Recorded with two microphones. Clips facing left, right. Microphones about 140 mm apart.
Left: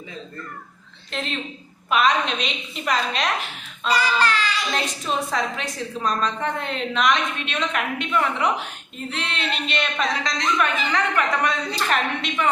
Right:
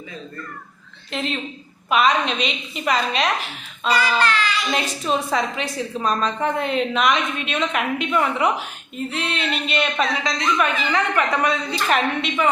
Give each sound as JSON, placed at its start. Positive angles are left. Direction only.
{"t": 1.1, "sound": "a woman's voice", "side_deg": -5}
{"t": 3.9, "sound": "child singing", "side_deg": 35}
{"t": 4.7, "sound": "a woman's voice", "side_deg": 0}